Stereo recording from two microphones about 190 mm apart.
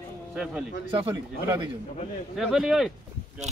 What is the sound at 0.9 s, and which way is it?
Speech, 25° right (ahead or behind).